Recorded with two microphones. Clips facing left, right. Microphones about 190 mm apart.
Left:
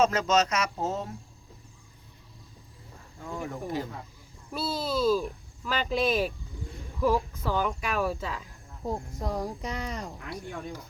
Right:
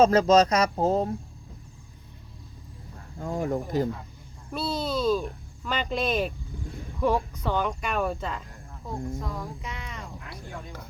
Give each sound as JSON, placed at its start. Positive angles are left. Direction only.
{"t": 0.0, "sound": "speech", "side_deg": -35}
{"t": 3.2, "sound": "speech", "side_deg": -45}
{"t": 4.5, "sound": "speech", "side_deg": 5}
{"t": 8.8, "sound": "speech", "side_deg": 40}